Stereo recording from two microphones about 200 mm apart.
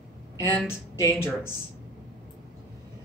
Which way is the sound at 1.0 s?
15° left (ahead or behind).